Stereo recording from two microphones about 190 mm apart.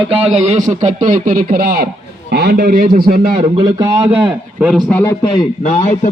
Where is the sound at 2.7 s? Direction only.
45° right (ahead or behind).